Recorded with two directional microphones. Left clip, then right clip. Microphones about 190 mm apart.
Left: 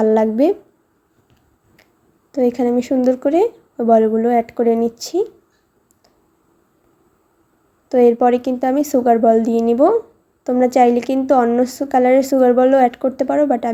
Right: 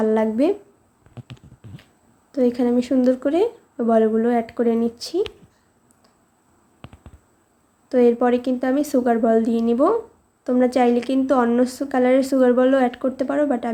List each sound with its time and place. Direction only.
0.0 s a woman's voice: 20° left (ahead or behind)
2.3 s a woman's voice: 15° left (ahead or behind)
7.9 s a woman's voice: 15° left (ahead or behind)